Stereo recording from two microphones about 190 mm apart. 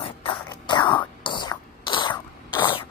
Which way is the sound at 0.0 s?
30° left (ahead or behind).